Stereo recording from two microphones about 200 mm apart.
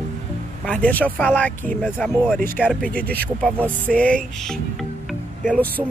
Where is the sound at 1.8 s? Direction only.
5° right (ahead or behind).